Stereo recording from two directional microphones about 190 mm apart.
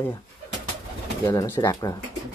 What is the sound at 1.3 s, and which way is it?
Speech, 15° left (ahead or behind).